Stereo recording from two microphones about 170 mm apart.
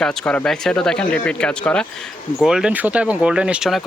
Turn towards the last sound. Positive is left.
turn(degrees=0)  # may be behind; listen again after turning